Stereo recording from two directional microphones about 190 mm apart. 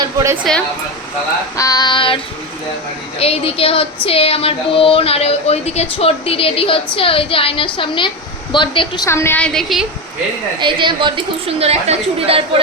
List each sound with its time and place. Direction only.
0.0 s a sound: 15° right (ahead or behind)
1.5 s a woman's voice: 20° left (ahead or behind)
3.2 s child singing: 30° left (ahead or behind)
6.9 s a woman's voice: 30° left (ahead or behind)
9.0 s a woman's voice: 15° left (ahead or behind)
10.6 s a woman's voice: 25° right (ahead or behind)